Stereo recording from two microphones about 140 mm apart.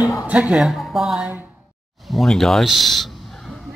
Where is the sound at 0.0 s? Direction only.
25° left (ahead or behind).